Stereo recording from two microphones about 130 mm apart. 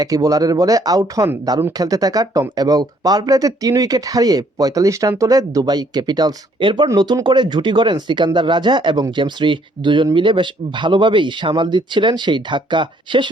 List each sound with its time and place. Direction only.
0.0 s speech: 25° right (ahead or behind)